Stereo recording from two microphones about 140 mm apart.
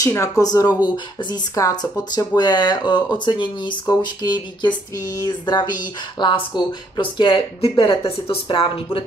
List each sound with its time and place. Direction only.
0.0 s speech: 25° left (ahead or behind)